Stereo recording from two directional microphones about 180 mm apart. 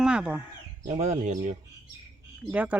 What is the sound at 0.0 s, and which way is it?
Speech, 5° right (ahead or behind).